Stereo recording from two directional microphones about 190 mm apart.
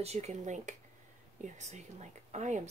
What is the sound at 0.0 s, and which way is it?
A woman's voice, 35° right (ahead or behind).